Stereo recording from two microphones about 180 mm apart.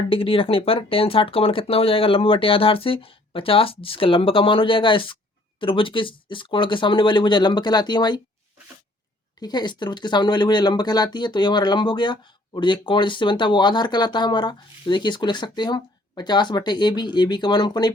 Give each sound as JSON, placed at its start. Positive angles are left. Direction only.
{"t": 0.1, "sound": "speech", "side_deg": 30}
{"t": 9.4, "sound": "speech", "side_deg": 25}